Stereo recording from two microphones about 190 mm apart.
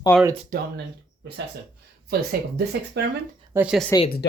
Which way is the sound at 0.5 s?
45° right (ahead or behind).